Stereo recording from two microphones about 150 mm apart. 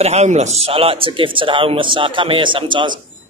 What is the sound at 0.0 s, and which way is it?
A man's voice, 45° right (ahead or behind).